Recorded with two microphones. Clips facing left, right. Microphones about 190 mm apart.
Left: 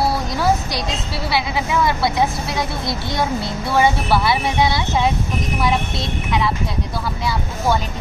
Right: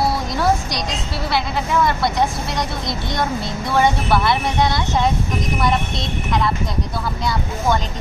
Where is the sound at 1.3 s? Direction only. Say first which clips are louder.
Even; 5° left (ahead or behind).